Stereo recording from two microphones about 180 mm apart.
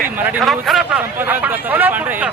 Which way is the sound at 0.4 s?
Centre (ahead or behind).